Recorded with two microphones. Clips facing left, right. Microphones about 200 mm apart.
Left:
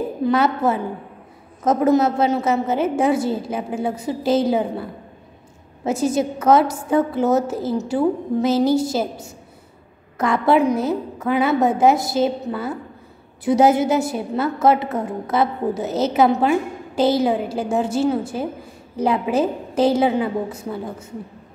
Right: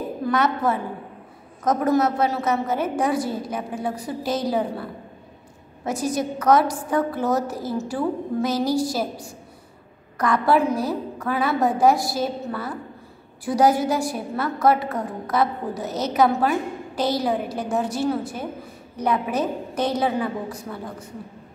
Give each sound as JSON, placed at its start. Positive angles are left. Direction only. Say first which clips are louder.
{"t": 0.2, "sound": "a woman's voice", "louder": "left 4 dB", "side_deg": 25}
{"t": 5.9, "sound": "a woman's voice", "louder": "left 5 dB", "side_deg": 25}